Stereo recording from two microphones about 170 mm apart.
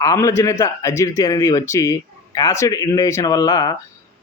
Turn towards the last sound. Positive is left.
turn(degrees=20)  # may be behind; listen again after turning